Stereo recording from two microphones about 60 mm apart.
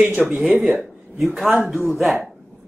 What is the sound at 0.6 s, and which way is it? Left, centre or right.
Speech, centre.